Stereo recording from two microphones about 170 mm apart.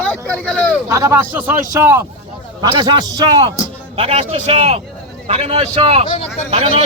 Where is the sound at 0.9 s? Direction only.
20° right (ahead or behind).